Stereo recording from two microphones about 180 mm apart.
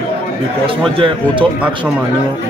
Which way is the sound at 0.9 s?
30° right (ahead or behind).